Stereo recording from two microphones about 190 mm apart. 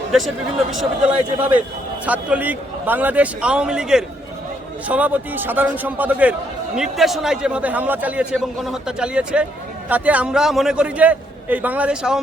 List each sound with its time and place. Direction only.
0.7 s a man's voice: 5° right (ahead or behind)